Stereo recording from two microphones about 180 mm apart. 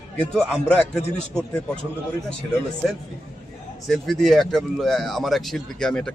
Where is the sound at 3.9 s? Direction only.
Centre (ahead or behind).